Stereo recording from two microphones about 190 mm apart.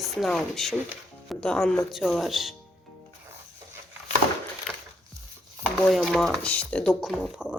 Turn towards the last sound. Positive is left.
turn(degrees=0)  # may be behind; listen again after turning